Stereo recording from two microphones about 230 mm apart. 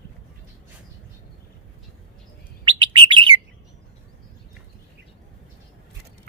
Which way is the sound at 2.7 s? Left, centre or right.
Centre.